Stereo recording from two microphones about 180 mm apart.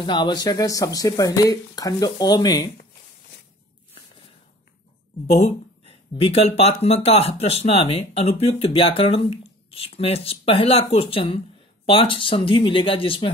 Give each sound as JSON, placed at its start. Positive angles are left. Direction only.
{"t": 0.0, "sound": "speech", "side_deg": 25}
{"t": 5.2, "sound": "speech", "side_deg": 35}